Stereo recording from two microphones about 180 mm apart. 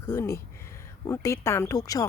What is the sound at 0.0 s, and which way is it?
Speech, 15° left (ahead or behind).